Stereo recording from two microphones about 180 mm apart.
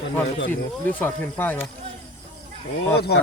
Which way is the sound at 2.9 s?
65° left (ahead or behind).